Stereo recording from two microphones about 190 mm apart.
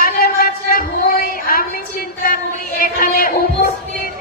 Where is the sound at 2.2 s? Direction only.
50° left (ahead or behind).